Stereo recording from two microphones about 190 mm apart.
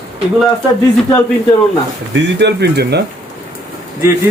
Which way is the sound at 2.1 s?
65° right (ahead or behind).